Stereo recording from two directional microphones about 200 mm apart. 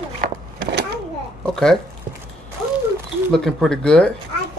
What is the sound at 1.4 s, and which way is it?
Speech, 5° left (ahead or behind).